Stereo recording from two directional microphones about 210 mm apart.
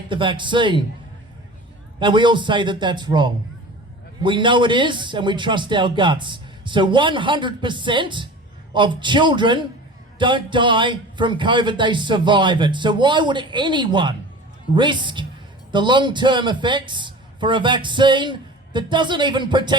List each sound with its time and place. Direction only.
0.1 s a man's voice: 25° right (ahead or behind)
2.0 s a man's voice: 20° right (ahead or behind)